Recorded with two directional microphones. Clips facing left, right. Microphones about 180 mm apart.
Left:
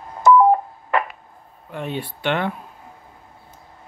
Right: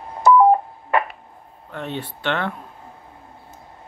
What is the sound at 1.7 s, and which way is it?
Speech, 10° left (ahead or behind).